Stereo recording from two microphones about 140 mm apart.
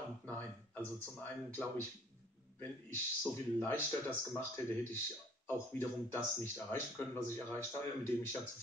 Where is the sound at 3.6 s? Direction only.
15° left (ahead or behind).